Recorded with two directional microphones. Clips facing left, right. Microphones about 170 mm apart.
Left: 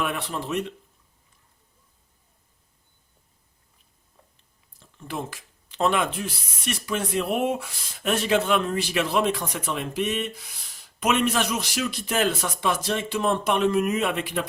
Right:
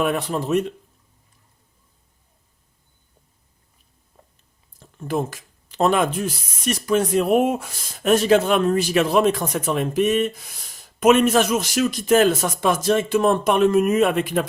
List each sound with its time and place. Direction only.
0.0 s speech: 40° right (ahead or behind)
4.8 s speech: 45° right (ahead or behind)